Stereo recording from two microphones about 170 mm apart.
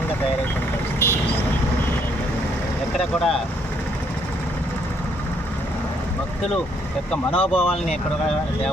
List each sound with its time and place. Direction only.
0.9 s vehicle: 15° left (ahead or behind)
3.0 s speech: centre (ahead or behind)
7.1 s speech: 10° left (ahead or behind)
7.4 s speech: 35° left (ahead or behind)